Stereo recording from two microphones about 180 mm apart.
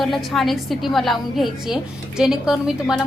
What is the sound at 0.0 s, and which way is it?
A woman's voice, centre (ahead or behind).